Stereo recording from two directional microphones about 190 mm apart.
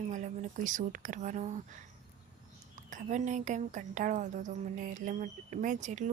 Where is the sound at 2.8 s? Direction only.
40° right (ahead or behind).